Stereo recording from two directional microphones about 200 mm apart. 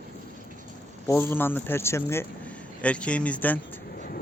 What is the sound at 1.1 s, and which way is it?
A man's voice, 10° left (ahead or behind).